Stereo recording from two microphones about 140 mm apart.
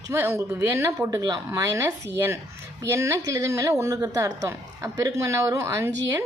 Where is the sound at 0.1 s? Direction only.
15° right (ahead or behind).